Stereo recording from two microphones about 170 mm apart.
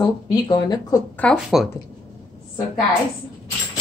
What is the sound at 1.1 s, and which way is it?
Speech, 5° left (ahead or behind).